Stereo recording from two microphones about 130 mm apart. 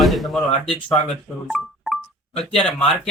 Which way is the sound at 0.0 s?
Centre (ahead or behind).